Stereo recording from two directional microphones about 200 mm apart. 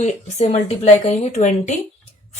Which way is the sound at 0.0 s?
35° left (ahead or behind).